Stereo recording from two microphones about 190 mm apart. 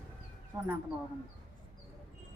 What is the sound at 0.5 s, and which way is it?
Speech, 10° right (ahead or behind).